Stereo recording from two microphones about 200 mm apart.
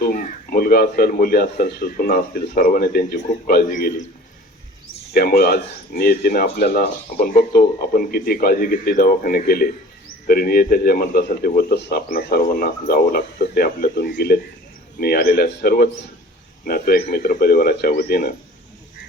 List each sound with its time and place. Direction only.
0.0 s speech: 45° left (ahead or behind)
5.1 s speech: 50° left (ahead or behind)